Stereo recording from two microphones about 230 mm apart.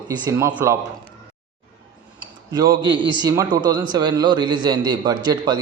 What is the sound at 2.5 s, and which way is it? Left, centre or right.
A man's voice, centre.